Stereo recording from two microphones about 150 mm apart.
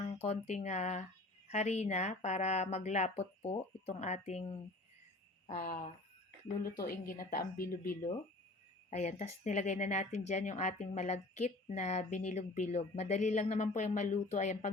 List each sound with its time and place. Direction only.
0.0 s speech: 45° left (ahead or behind)
5.5 s a woman's voice: 65° left (ahead or behind)
6.7 s a woman's voice: 85° left
8.9 s speech: 50° left (ahead or behind)